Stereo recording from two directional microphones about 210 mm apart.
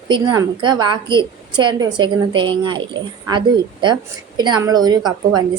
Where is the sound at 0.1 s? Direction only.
20° right (ahead or behind).